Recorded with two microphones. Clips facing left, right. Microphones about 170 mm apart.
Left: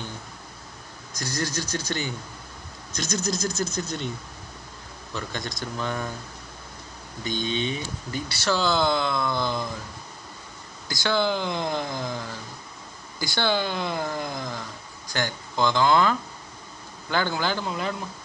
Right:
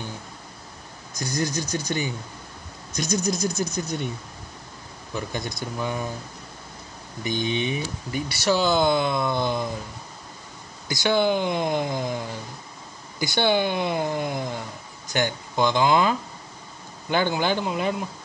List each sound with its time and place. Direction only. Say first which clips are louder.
1.2 s speech: right 3 dB; 20° right (ahead or behind)
5.1 s speech: right 3 dB; 10° right (ahead or behind)
7.2 s speech: right 2 dB; 15° right (ahead or behind)
10.9 s speech: right 3 dB; 20° right (ahead or behind)